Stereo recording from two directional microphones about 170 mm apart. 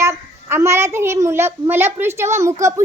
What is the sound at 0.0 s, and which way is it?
A child's voice, 15° right (ahead or behind).